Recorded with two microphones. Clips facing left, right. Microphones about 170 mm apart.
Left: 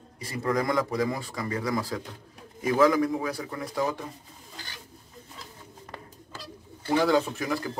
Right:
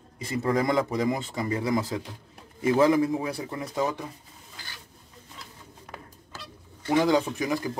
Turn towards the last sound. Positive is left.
turn(degrees=-20)  # may be behind; listen again after turning